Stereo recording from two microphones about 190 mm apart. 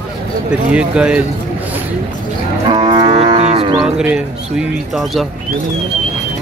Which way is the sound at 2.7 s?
25° right (ahead or behind).